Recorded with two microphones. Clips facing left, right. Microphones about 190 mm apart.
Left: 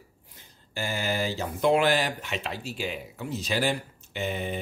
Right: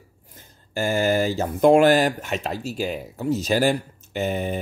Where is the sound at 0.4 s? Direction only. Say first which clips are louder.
Right 8 dB; 45° right (ahead or behind).